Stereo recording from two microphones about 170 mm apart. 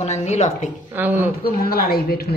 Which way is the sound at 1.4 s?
60° left (ahead or behind).